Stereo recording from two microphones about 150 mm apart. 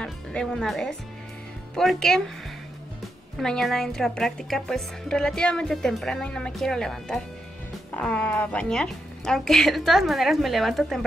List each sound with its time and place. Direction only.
0.0 s speech: 5° left (ahead or behind)
3.3 s speech: centre (ahead or behind)